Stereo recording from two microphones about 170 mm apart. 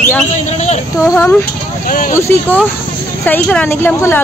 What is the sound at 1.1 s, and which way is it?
Speech, 15° left (ahead or behind).